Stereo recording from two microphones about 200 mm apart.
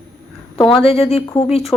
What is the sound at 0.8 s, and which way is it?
Speech, 30° left (ahead or behind).